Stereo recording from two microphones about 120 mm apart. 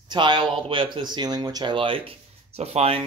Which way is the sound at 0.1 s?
40° right (ahead or behind).